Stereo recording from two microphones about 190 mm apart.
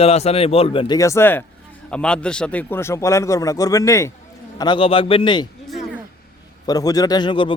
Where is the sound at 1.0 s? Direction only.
15° left (ahead or behind).